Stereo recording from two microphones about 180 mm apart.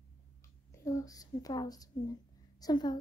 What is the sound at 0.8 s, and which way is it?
A woman's voice, 20° left (ahead or behind).